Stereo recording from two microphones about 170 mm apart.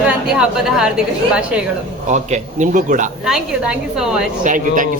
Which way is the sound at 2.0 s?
45° right (ahead or behind).